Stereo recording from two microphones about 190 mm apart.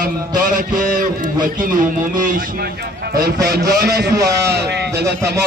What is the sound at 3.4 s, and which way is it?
A man's voice, 60° right (ahead or behind).